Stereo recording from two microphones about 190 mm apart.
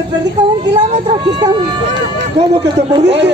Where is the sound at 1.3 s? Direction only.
20° right (ahead or behind).